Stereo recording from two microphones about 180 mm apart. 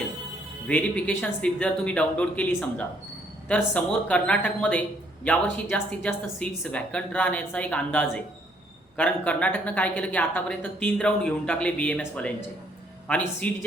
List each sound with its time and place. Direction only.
0.7 s speech: 5° left (ahead or behind)